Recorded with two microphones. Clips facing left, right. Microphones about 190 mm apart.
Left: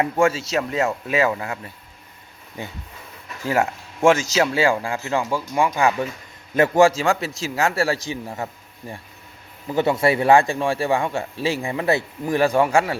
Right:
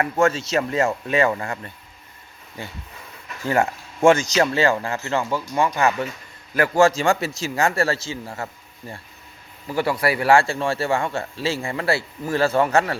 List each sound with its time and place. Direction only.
0.0 s speech: 10° left (ahead or behind)
2.6 s a man's voice: 20° left (ahead or behind)
3.4 s a man's voice: 5° left (ahead or behind); by 6.8 s 25° left (ahead or behind)
6.8 s speech: 5° left (ahead or behind)
9.6 s a man's voice: 20° left (ahead or behind)